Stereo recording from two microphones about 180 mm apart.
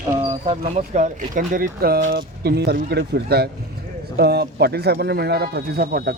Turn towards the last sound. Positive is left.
turn(degrees=-60)  # may be behind; listen again after turning